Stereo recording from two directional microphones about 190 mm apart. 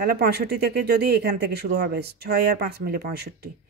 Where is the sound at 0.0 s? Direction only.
55° right (ahead or behind).